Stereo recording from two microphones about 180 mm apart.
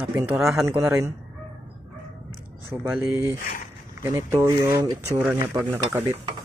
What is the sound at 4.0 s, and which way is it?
Speech, 15° right (ahead or behind).